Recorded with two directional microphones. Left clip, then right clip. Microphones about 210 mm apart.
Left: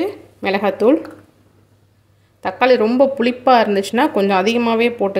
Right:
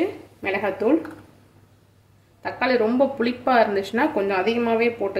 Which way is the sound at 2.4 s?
45° left (ahead or behind).